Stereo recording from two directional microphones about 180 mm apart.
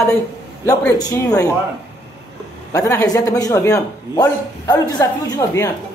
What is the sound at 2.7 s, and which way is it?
Speech, 20° left (ahead or behind).